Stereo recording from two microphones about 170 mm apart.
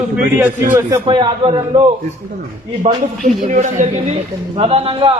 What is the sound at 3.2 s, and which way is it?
Speech, 45° right (ahead or behind).